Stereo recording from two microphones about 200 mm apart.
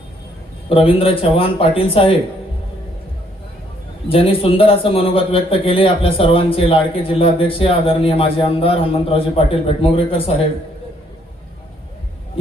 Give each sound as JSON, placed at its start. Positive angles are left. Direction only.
{"t": 0.7, "sound": "a man's voice", "side_deg": 25}
{"t": 4.1, "sound": "a man's voice", "side_deg": 30}